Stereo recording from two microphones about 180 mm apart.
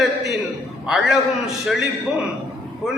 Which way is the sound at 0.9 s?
Centre (ahead or behind).